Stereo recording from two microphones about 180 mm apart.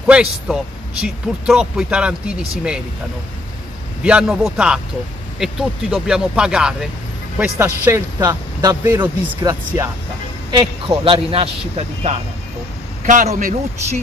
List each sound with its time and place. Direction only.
0.0 s speech: 5° right (ahead or behind)
4.0 s a man's voice: 5° right (ahead or behind); by 13.6 s 45° right (ahead or behind)